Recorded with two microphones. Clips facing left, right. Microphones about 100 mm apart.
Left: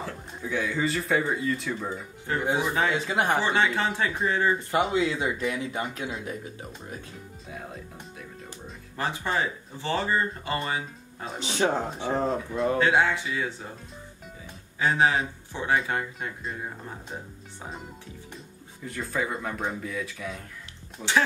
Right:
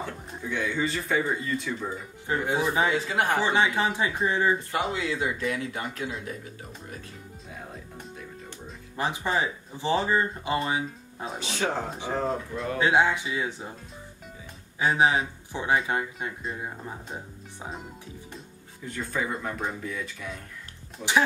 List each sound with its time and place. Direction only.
0.0 s speech: centre (ahead or behind)
2.3 s speech: 15° right (ahead or behind)
3.1 s speech: 20° left (ahead or behind)
3.3 s speech: 15° right (ahead or behind)
4.6 s speech: 20° left (ahead or behind)
7.5 s speech: centre (ahead or behind)
8.9 s speech: 15° right (ahead or behind)
11.3 s speech: 20° left (ahead or behind)
12.3 s speech: centre (ahead or behind)
12.7 s speech: 15° right (ahead or behind)
14.8 s speech: 15° right (ahead or behind)
17.6 s speech: centre (ahead or behind)